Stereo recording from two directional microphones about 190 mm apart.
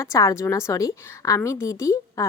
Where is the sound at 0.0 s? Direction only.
15° left (ahead or behind).